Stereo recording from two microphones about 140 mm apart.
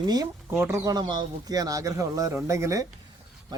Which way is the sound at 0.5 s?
20° right (ahead or behind).